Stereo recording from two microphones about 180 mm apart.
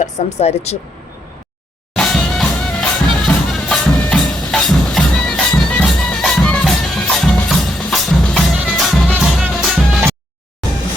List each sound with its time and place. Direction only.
0.0 s speech: 35° left (ahead or behind)
2.0 s music: 5° left (ahead or behind)